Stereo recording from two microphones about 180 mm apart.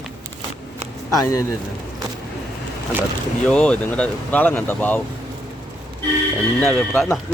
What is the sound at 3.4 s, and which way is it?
Speech, 5° left (ahead or behind).